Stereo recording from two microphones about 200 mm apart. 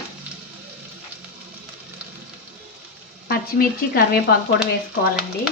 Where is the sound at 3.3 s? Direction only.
50° left (ahead or behind).